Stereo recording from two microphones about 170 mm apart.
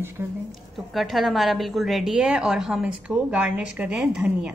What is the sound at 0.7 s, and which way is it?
A woman's voice, centre (ahead or behind).